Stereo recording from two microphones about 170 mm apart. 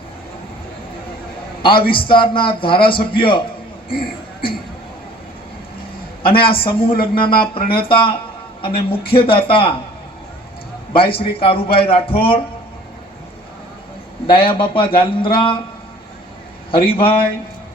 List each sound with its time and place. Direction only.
1.6 s speech: 30° left (ahead or behind)
3.8 s a sound: 60° left (ahead or behind)
6.3 s a man's voice: 30° left (ahead or behind)
10.9 s a man's voice: 30° left (ahead or behind)
14.3 s a man's voice: 30° left (ahead or behind)
16.7 s a man's voice: 30° left (ahead or behind)